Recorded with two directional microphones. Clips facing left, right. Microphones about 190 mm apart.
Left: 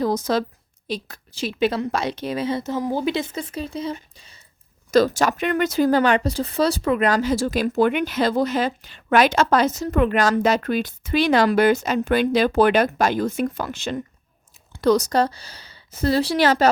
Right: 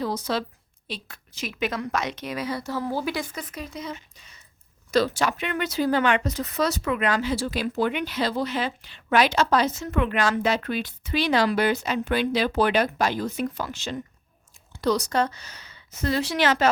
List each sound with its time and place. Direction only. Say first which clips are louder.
0.0 s a woman's voice: left 6 dB; 45° left (ahead or behind)
4.9 s speech: left 5 dB; 45° left (ahead or behind)